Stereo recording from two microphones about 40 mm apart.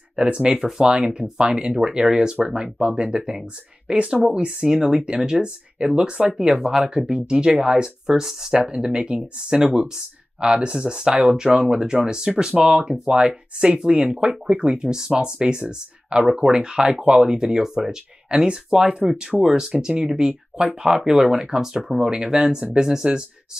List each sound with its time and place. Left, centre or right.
0.1 s speech: right
0.8 s speech: right
16.9 s speech: right